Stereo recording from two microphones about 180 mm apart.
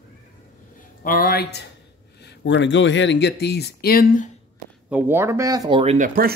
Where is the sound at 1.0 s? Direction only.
50° left (ahead or behind).